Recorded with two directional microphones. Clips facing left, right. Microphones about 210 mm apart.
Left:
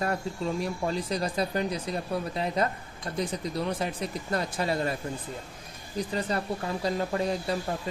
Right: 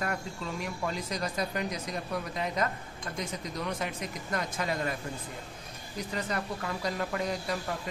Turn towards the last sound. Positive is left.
turn(degrees=30)  # may be behind; listen again after turning